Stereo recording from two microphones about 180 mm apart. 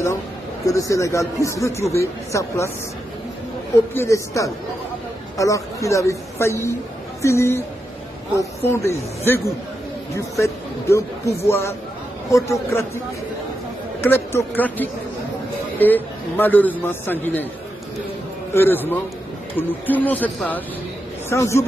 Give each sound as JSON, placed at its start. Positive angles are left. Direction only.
{"t": 0.7, "sound": "speech", "side_deg": 15}
{"t": 3.9, "sound": "speech", "side_deg": 15}
{"t": 14.0, "sound": "speech", "side_deg": 10}
{"t": 18.5, "sound": "speech", "side_deg": 10}